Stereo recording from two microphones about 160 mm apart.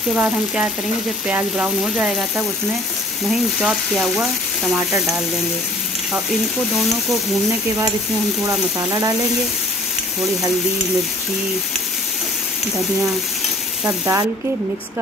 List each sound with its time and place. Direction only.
0.1 s frying: 5° right (ahead or behind)
3.3 s speech: centre (ahead or behind)
8.5 s frying: 20° right (ahead or behind)
13.8 s frying: 20° right (ahead or behind)